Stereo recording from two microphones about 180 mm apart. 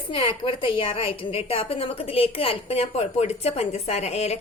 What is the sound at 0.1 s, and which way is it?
A woman's voice, 30° left (ahead or behind).